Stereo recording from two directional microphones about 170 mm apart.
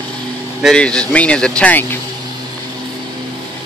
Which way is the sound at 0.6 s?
5° left (ahead or behind).